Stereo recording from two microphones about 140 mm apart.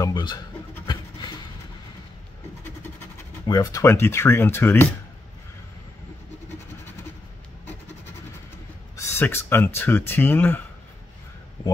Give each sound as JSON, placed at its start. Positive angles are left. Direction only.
{"t": 0.0, "sound": "speech", "side_deg": 30}
{"t": 3.4, "sound": "speech", "side_deg": 25}
{"t": 8.9, "sound": "speech", "side_deg": 20}